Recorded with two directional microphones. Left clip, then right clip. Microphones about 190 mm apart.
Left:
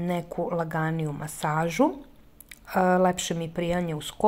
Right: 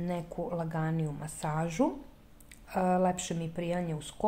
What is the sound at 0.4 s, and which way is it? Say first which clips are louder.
A woman's voice: left 8 dB; 20° left (ahead or behind).